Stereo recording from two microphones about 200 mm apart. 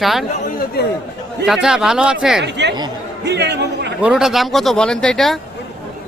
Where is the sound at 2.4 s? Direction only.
60° right (ahead or behind).